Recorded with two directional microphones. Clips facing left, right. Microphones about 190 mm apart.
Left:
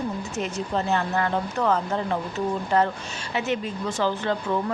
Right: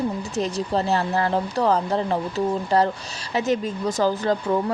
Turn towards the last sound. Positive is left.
turn(degrees=-40)  # may be behind; listen again after turning